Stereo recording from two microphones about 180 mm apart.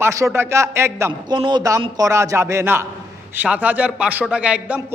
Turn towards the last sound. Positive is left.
turn(degrees=-5)  # may be behind; listen again after turning